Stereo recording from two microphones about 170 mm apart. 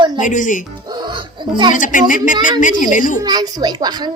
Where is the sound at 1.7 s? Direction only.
50° left (ahead or behind).